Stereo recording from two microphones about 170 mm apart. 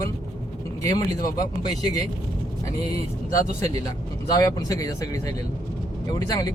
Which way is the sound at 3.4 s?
20° left (ahead or behind).